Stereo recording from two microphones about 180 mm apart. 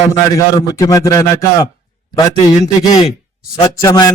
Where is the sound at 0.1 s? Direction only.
20° left (ahead or behind).